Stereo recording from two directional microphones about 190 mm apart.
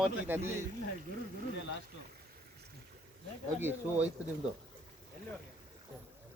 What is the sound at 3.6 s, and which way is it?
Speech, 10° right (ahead or behind).